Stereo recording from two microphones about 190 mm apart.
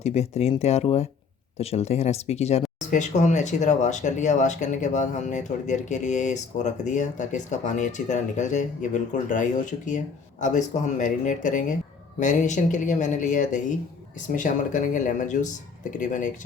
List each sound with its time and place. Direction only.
0.0 s speech: 35° left (ahead or behind)